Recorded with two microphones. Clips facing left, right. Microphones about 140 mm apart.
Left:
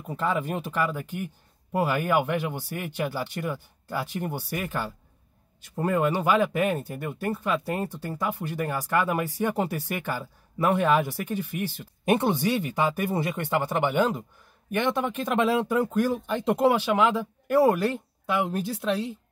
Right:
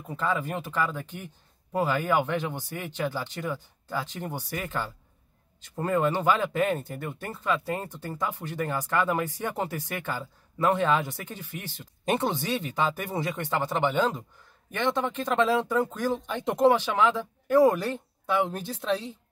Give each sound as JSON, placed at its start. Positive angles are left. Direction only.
{"t": 0.1, "sound": "speech", "side_deg": 15}